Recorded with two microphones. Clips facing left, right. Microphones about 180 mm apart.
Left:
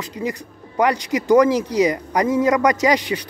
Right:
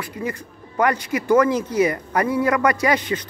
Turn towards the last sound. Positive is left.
turn(degrees=15)  # may be behind; listen again after turning